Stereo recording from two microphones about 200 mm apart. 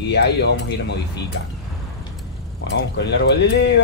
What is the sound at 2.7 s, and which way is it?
Speech, 60° left (ahead or behind).